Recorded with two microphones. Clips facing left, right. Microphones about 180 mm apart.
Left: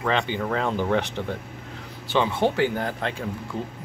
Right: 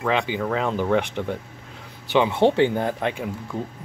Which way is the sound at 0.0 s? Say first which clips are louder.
Right 2 dB; 5° right (ahead or behind).